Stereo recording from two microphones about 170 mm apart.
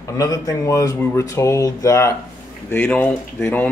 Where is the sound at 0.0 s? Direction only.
20° left (ahead or behind).